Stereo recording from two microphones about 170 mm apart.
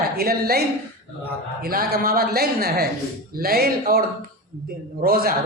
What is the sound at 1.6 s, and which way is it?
A woman's voice, 60° right (ahead or behind).